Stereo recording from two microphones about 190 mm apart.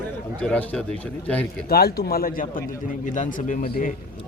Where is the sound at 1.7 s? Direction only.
55° left (ahead or behind).